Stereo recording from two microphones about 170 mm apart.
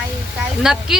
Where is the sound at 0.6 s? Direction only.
5° right (ahead or behind).